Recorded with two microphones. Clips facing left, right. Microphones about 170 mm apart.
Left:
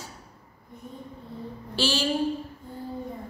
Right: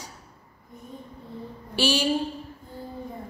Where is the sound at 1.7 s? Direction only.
15° right (ahead or behind).